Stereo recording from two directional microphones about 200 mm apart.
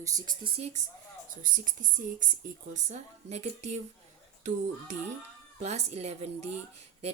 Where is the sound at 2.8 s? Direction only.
35° right (ahead or behind).